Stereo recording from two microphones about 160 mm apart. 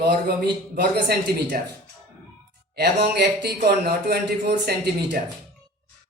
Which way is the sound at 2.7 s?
90° right.